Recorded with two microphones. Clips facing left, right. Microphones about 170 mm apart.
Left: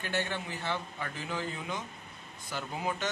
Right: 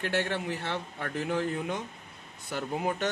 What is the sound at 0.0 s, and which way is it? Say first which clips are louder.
A man's voice: right 4 dB; 75° right (ahead or behind).